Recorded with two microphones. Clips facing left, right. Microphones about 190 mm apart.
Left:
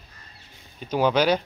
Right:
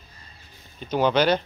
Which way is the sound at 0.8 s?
10° left (ahead or behind).